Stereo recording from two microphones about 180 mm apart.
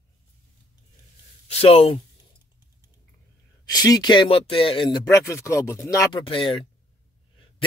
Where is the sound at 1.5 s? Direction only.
35° left (ahead or behind).